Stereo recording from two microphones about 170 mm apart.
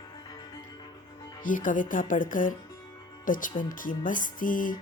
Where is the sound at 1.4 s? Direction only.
50° left (ahead or behind).